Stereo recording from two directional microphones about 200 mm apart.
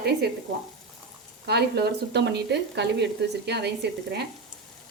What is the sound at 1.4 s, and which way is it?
Speech, 55° right (ahead or behind).